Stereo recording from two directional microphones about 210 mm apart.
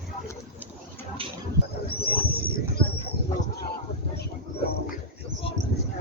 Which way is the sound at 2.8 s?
25° left (ahead or behind).